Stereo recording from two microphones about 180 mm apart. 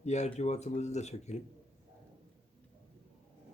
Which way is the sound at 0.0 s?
40° left (ahead or behind).